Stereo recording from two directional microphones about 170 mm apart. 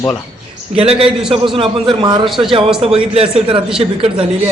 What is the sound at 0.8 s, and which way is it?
A man's voice, 35° right (ahead or behind).